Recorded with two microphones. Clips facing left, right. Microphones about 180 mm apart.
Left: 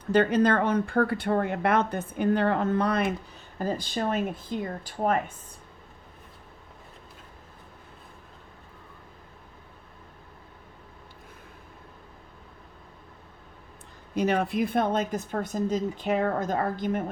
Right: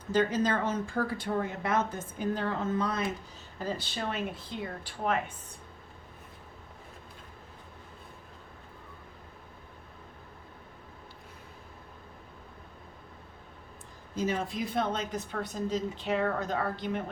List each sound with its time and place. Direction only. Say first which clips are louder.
0.1 s speech: left 6 dB; 60° left (ahead or behind)
3.6 s a woman's voice: left 6 dB; 45° left (ahead or behind)
14.2 s a woman's voice: left 6 dB; 65° left (ahead or behind); by 17.0 s 45° left (ahead or behind)